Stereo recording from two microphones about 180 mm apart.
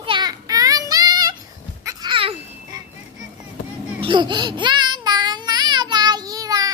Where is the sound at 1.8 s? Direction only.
25° right (ahead or behind).